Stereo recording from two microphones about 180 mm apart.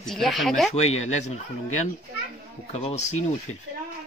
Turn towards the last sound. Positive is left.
turn(degrees=40)  # may be behind; listen again after turning